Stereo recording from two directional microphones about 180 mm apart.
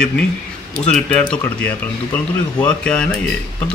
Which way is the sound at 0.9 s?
5° left (ahead or behind).